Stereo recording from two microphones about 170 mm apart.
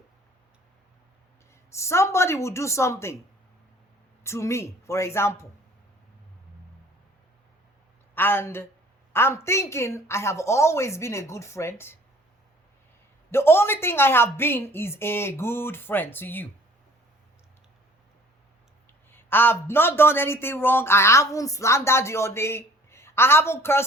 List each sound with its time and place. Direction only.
1.7 s a man's voice: 15° left (ahead or behind)
4.2 s a man's voice: 15° left (ahead or behind)
8.1 s a man's voice: 15° left (ahead or behind)
13.3 s a man's voice: 15° left (ahead or behind)
19.1 s a man's voice: 10° left (ahead or behind)